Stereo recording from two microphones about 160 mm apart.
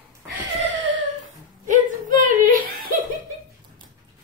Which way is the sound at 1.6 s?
55° right (ahead or behind).